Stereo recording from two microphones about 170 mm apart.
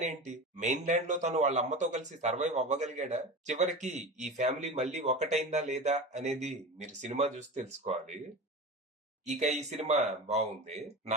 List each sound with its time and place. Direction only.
0.0 s a man's voice: 45° right (ahead or behind)
9.2 s a man's voice: 45° right (ahead or behind)